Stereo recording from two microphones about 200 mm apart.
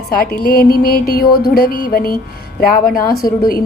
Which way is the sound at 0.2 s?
50° left (ahead or behind).